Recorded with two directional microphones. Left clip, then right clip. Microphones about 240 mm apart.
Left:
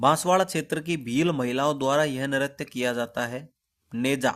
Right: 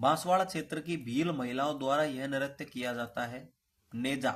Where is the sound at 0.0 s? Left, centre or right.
Left.